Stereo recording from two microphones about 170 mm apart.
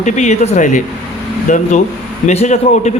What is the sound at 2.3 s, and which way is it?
Speech, 40° left (ahead or behind).